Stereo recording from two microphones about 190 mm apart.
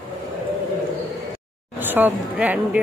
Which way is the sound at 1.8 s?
10° right (ahead or behind).